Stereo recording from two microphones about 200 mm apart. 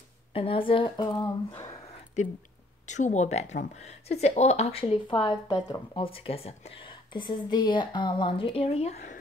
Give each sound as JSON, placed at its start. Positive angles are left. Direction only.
{"t": 0.3, "sound": "speech", "side_deg": 25}
{"t": 2.2, "sound": "speech", "side_deg": 35}